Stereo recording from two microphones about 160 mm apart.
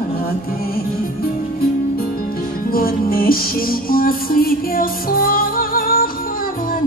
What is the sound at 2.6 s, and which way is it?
Music, 65° left (ahead or behind).